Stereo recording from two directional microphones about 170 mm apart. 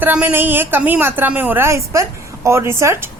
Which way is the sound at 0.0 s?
10° right (ahead or behind).